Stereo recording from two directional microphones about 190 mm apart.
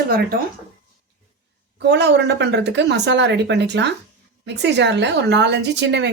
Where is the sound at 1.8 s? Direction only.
65° right (ahead or behind).